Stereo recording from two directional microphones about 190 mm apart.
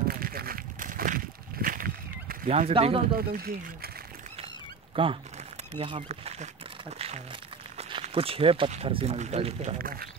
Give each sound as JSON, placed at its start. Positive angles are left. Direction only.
{"t": 0.1, "sound": "a sound", "side_deg": -50}
{"t": 2.7, "sound": "speech", "side_deg": -30}
{"t": 3.2, "sound": "speech", "side_deg": -50}
{"t": 4.9, "sound": "speech", "side_deg": -30}
{"t": 9.8, "sound": "speech", "side_deg": -50}